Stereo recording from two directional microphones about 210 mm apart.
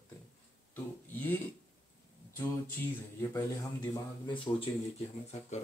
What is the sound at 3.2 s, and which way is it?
Speech, 15° left (ahead or behind).